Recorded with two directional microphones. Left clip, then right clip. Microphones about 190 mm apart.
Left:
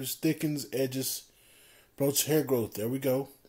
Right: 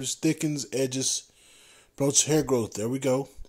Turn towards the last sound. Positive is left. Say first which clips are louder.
# right 3 dB
turn(degrees=-30)  # may be behind; listen again after turning